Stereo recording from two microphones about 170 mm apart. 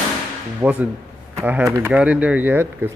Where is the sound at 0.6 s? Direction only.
10° right (ahead or behind).